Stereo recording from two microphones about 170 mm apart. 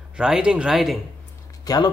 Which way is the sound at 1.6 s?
20° left (ahead or behind).